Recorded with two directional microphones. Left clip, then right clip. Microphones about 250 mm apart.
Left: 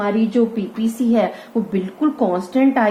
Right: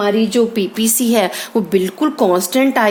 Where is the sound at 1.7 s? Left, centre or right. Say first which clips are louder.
Right 4 dB; right.